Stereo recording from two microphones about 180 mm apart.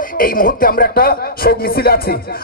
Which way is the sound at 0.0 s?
50° left (ahead or behind).